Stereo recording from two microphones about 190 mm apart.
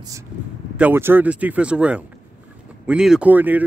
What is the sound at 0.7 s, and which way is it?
Speech, 10° right (ahead or behind).